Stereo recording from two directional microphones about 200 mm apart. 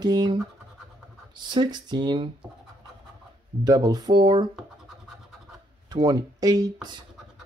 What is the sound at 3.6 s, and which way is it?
Speech, 20° right (ahead or behind).